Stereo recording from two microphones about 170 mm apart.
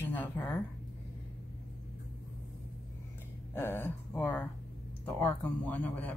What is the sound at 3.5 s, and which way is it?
Speech, 15° left (ahead or behind).